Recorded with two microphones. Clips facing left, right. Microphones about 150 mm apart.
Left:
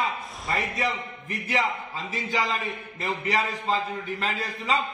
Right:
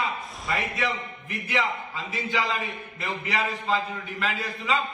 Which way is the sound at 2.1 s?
35° left (ahead or behind).